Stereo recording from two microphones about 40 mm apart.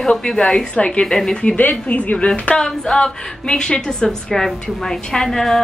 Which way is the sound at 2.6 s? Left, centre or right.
Centre.